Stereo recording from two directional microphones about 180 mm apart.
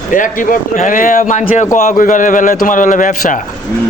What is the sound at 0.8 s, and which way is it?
A man's voice, 45° left (ahead or behind).